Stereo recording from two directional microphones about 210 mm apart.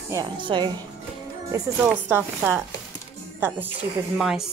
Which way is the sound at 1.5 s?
10° right (ahead or behind).